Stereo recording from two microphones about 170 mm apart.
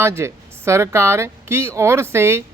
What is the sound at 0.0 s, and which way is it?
Speech, 15° right (ahead or behind).